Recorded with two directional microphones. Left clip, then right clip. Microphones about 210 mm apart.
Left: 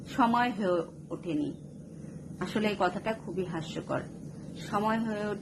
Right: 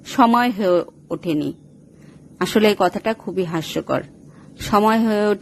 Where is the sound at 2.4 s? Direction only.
50° right (ahead or behind).